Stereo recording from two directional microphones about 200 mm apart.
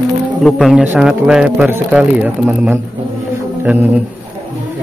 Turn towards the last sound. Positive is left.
turn(degrees=-10)  # may be behind; listen again after turning